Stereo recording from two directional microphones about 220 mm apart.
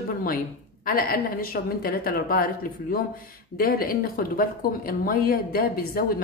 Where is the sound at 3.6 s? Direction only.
40° left (ahead or behind).